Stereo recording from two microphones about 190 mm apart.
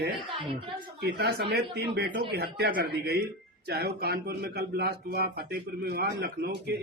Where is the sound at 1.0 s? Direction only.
55° right (ahead or behind).